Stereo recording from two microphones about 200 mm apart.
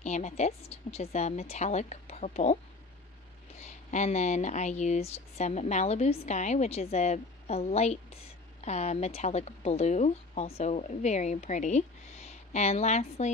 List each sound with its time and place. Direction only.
0.0 s a woman's voice: 35° left (ahead or behind)